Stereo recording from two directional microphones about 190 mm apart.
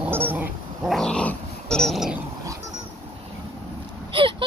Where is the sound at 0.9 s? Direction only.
5° left (ahead or behind).